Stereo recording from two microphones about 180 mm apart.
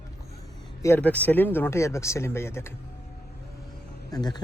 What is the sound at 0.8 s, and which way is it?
Speech, 10° left (ahead or behind).